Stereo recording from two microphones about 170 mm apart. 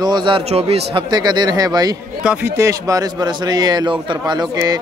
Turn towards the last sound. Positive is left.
turn(degrees=-25)  # may be behind; listen again after turning